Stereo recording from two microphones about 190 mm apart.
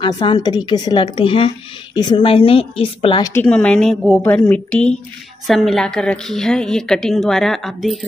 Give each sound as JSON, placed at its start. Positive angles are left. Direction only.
{"t": 0.0, "sound": "a woman's voice", "side_deg": 25}
{"t": 3.4, "sound": "a woman's voice", "side_deg": 5}
{"t": 4.2, "sound": "a woman's voice", "side_deg": 15}